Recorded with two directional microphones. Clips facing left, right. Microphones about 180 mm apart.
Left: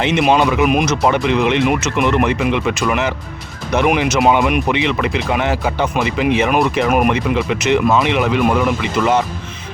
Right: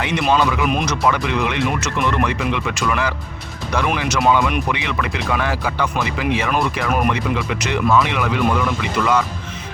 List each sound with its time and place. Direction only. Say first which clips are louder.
0.0 s speech: left 4 dB; 25° left (ahead or behind)